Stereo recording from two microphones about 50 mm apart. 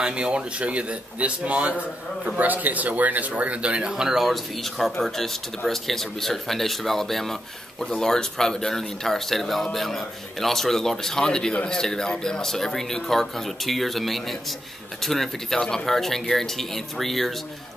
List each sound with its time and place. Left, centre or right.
0.0 s speech: right
3.9 s speech: centre